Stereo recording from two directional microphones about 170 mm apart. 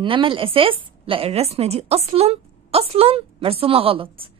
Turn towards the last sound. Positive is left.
turn(degrees=-30)  # may be behind; listen again after turning